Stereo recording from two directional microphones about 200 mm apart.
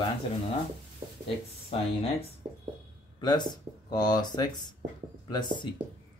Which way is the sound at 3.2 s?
20° left (ahead or behind).